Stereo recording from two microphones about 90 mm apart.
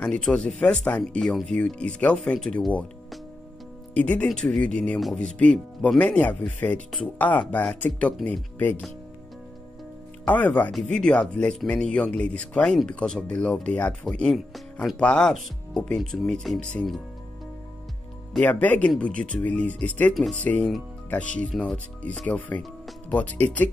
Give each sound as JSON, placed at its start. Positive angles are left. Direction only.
{"t": 0.0, "sound": "speech", "side_deg": 10}
{"t": 3.9, "sound": "speech", "side_deg": 15}
{"t": 10.2, "sound": "speech", "side_deg": 20}
{"t": 10.7, "sound": "speech", "side_deg": 5}
{"t": 14.0, "sound": "speech", "side_deg": 5}
{"t": 18.4, "sound": "speech", "side_deg": 15}
{"t": 23.0, "sound": "speech", "side_deg": 15}